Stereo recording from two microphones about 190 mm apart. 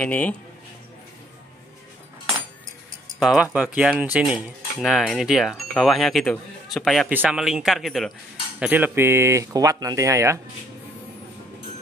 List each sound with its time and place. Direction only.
0.0 s speech: 10° left (ahead or behind)
3.2 s speech: centre (ahead or behind)
3.5 s cutlery: 5° right (ahead or behind)
8.5 s speech: 10° right (ahead or behind)